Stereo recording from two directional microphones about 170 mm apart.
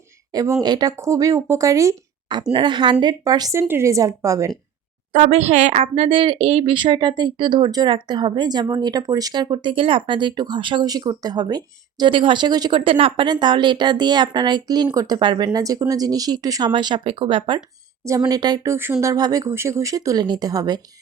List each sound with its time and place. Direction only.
0.3 s speech: 20° right (ahead or behind)
5.1 s speech: 45° right (ahead or behind); by 20.8 s 25° right (ahead or behind)